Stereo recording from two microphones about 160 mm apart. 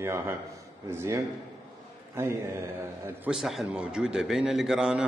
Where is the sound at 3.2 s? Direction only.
Centre (ahead or behind).